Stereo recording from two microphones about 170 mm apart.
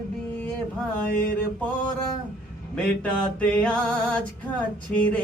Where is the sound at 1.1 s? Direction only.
65° left (ahead or behind).